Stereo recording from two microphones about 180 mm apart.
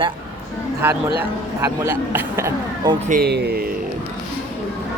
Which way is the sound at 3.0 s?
55° right (ahead or behind).